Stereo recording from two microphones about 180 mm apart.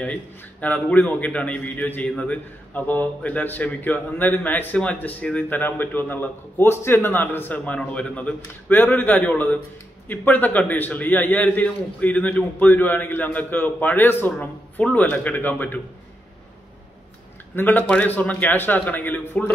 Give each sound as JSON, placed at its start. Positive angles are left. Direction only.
{"t": 0.0, "sound": "a man's voice", "side_deg": 10}
{"t": 17.6, "sound": "a man's voice", "side_deg": 10}